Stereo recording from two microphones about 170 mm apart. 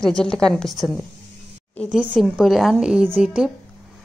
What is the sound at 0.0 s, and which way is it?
A woman's voice, 5° left (ahead or behind).